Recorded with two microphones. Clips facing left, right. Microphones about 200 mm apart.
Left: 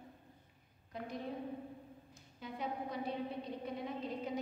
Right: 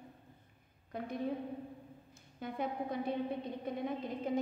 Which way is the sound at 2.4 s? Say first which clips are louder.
Right 4 dB; 55° right (ahead or behind).